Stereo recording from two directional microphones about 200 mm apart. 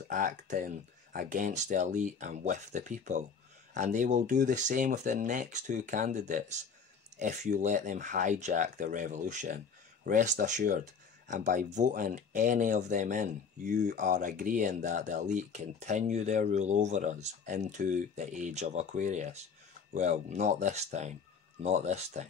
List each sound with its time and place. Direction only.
0.1 s speech: 40° right (ahead or behind)